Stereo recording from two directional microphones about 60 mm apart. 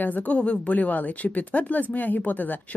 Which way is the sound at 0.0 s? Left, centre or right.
Left.